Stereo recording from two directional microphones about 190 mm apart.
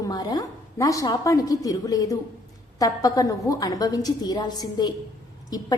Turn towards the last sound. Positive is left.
turn(degrees=20)  # may be behind; listen again after turning